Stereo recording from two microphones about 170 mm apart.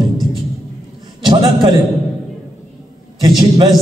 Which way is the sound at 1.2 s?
25° right (ahead or behind).